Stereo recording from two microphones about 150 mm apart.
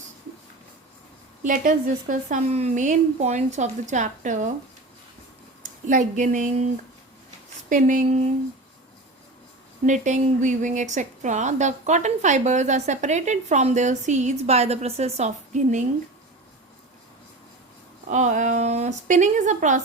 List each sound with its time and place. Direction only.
1.5 s speech: 60° right (ahead or behind)
5.9 s a woman's voice: 55° right (ahead or behind)
7.7 s a woman's voice: 60° right (ahead or behind)
9.8 s speech: 55° right (ahead or behind)
18.1 s a woman's voice: 55° right (ahead or behind)